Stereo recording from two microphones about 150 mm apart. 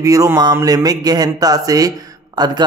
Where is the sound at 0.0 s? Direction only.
20° right (ahead or behind).